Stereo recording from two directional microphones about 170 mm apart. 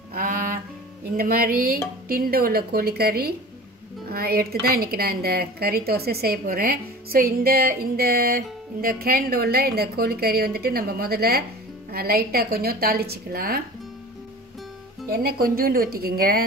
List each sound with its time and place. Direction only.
0.1 s music: 55° right (ahead or behind)
1.1 s a woman's voice: 60° right (ahead or behind)
15.0 s a woman's voice: 60° right (ahead or behind)